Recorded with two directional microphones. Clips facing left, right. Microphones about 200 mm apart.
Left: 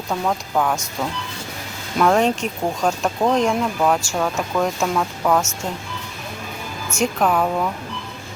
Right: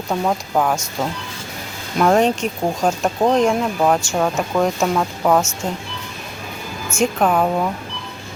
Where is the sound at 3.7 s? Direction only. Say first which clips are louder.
Right 2 dB; 20° right (ahead or behind).